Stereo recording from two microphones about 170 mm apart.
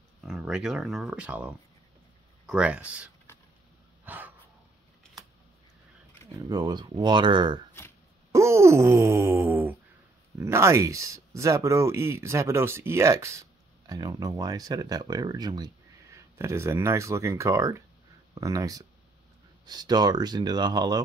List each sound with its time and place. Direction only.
0.2 s speech: centre (ahead or behind)
4.0 s a sound: 10° right (ahead or behind)
6.3 s speech: 20° right (ahead or behind)
8.3 s groan: 15° right (ahead or behind)
10.3 s speech: 15° right (ahead or behind)